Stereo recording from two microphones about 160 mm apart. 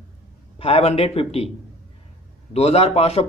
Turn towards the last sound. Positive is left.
turn(degrees=40)  # may be behind; listen again after turning